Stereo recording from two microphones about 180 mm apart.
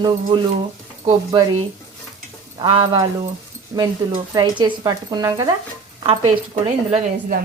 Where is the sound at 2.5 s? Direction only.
30° right (ahead or behind).